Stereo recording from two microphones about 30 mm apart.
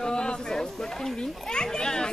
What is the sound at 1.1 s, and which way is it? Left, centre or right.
Speech, left.